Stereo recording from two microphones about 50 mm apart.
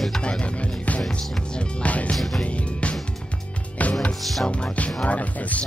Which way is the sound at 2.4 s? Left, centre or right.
Left.